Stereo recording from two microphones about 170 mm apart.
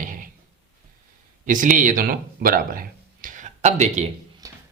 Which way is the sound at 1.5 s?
50° right (ahead or behind).